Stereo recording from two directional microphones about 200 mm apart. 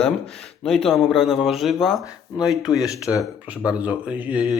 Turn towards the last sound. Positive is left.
turn(degrees=-5)  # may be behind; listen again after turning